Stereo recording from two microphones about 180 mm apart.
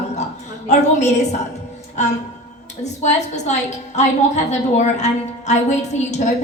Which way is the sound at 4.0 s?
40° left (ahead or behind).